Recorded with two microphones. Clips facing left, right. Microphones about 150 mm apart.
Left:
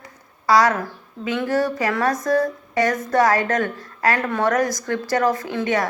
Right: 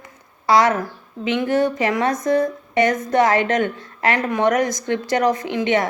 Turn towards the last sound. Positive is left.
turn(degrees=-20)  # may be behind; listen again after turning